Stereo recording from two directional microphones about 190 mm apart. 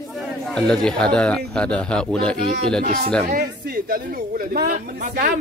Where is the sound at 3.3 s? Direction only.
45° right (ahead or behind).